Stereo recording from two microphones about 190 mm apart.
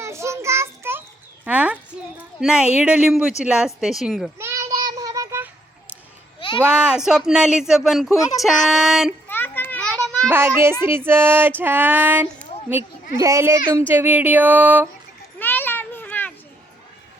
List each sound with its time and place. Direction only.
0.0 s child singing: 15° right (ahead or behind)
1.5 s a sound: 5° right (ahead or behind)
2.4 s speech: 5° right (ahead or behind)
4.4 s child singing: 15° right (ahead or behind)
6.6 s speech: 5° right (ahead or behind)
9.3 s children playing: 10° left (ahead or behind)
10.2 s a child's voice: 10° right (ahead or behind)
15.4 s children playing: 10° left (ahead or behind)